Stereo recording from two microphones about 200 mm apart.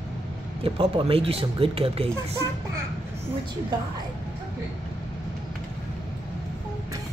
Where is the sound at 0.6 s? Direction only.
25° right (ahead or behind).